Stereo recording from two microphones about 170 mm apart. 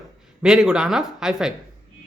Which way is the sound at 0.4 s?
5° right (ahead or behind).